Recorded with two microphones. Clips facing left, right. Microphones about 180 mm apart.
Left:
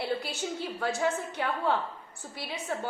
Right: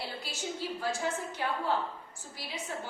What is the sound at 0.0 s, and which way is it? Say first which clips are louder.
A woman's voice: left 7 dB; 60° left (ahead or behind).